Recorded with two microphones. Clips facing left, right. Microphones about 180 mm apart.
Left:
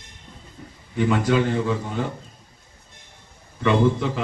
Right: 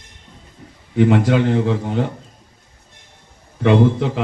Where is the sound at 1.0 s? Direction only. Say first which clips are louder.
Right 5 dB; 70° right (ahead or behind).